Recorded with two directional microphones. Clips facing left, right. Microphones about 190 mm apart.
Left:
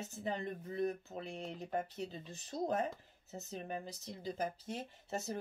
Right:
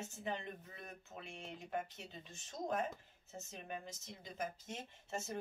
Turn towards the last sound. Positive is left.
turn(degrees=35)  # may be behind; listen again after turning